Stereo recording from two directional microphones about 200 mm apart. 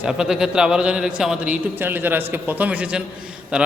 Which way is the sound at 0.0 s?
5° right (ahead or behind).